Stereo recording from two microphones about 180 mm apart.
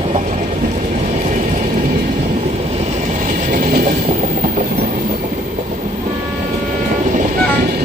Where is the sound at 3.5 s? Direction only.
50° right (ahead or behind).